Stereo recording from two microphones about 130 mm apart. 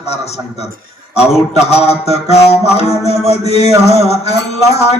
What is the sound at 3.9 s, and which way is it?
Music, 55° left (ahead or behind).